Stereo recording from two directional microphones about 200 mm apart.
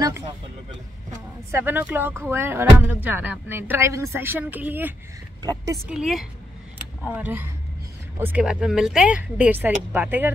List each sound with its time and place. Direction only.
1.5 s speech: 10° right (ahead or behind)
5.4 s a woman's voice: 20° right (ahead or behind)
5.9 s a woman's voice: centre (ahead or behind)